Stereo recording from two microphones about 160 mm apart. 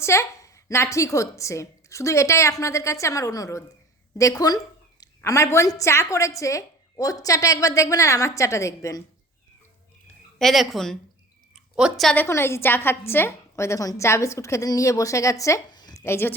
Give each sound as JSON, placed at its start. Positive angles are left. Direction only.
{"t": 0.0, "sound": "a woman's voice", "side_deg": 15}
{"t": 10.3, "sound": "speech", "side_deg": 0}
{"t": 11.5, "sound": "a sound", "side_deg": -5}
{"t": 12.1, "sound": "a woman's voice", "side_deg": 15}